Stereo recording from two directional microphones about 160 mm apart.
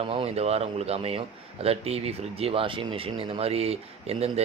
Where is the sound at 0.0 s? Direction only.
35° right (ahead or behind).